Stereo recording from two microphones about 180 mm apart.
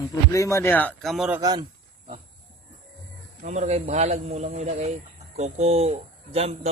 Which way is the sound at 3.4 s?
40° right (ahead or behind).